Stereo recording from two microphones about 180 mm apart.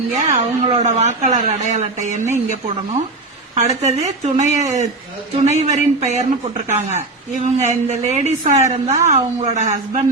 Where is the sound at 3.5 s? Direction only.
40° right (ahead or behind).